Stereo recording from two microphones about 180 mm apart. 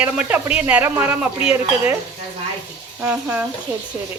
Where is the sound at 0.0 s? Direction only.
5° right (ahead or behind).